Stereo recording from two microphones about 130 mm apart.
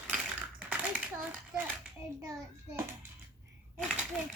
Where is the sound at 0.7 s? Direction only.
10° right (ahead or behind).